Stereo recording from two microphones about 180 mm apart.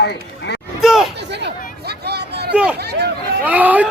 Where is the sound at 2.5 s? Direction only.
5° right (ahead or behind).